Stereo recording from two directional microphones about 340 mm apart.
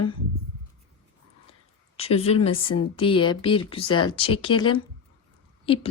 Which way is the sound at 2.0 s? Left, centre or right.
Centre.